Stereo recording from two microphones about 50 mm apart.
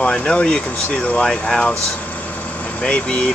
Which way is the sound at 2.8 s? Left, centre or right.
Left.